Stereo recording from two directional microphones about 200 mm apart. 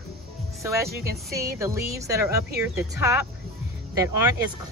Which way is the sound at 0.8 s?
50° right (ahead or behind).